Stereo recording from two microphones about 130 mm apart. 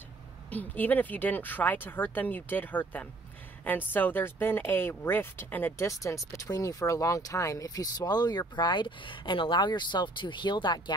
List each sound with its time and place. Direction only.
0.5 s speech: 15° left (ahead or behind); by 11.0 s 35° left (ahead or behind)